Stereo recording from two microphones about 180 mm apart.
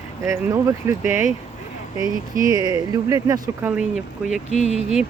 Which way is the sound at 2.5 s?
20° right (ahead or behind).